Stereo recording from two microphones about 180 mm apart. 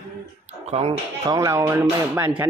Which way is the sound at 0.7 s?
35° right (ahead or behind).